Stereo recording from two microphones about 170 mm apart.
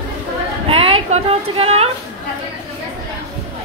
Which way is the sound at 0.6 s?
35° right (ahead or behind).